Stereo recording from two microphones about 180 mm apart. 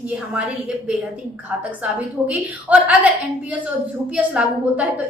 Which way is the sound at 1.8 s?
5° right (ahead or behind).